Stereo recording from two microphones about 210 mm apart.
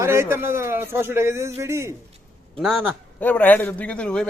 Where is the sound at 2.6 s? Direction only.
Centre (ahead or behind).